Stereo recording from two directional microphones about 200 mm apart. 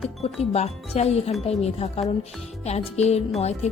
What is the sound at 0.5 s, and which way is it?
A woman's voice, 35° left (ahead or behind).